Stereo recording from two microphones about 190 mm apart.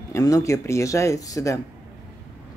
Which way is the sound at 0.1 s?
15° left (ahead or behind).